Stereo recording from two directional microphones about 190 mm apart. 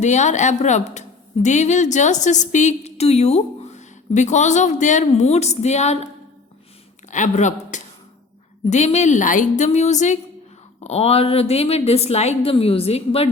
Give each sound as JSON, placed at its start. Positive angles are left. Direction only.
{"t": 0.0, "sound": "a woman's voice", "side_deg": 40}
{"t": 7.1, "sound": "a woman's voice", "side_deg": 40}